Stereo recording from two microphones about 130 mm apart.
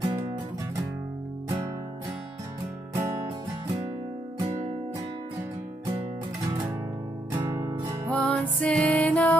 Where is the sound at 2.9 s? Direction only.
25° right (ahead or behind).